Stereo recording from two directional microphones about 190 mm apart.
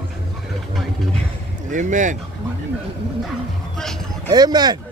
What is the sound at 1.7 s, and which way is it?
Speech, 40° right (ahead or behind).